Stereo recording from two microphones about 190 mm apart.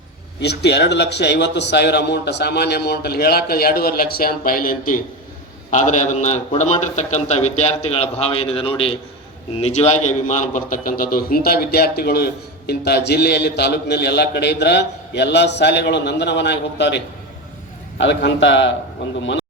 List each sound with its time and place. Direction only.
0.3 s a man's voice: 60° left (ahead or behind)